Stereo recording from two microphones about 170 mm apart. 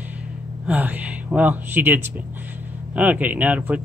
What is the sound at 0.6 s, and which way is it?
Speech, 10° right (ahead or behind).